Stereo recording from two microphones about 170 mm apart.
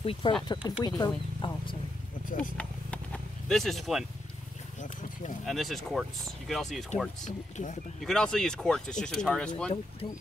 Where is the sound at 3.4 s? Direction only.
Centre (ahead or behind).